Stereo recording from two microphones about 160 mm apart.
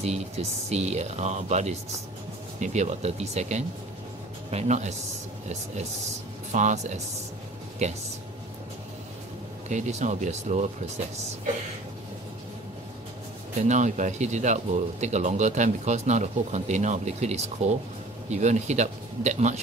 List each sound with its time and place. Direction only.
0.0 s speech: 40° right (ahead or behind)
6.5 s speech: 45° right (ahead or behind)
9.7 s speech: 45° right (ahead or behind)
13.6 s speech: 50° right (ahead or behind)